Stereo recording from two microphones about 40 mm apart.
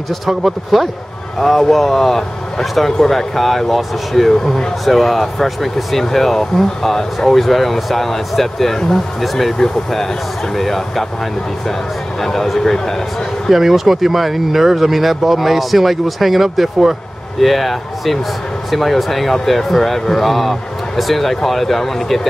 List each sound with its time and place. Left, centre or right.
0.3 s speech: centre
10.5 s speech: centre
12.2 s speech: centre
13.5 s speech: centre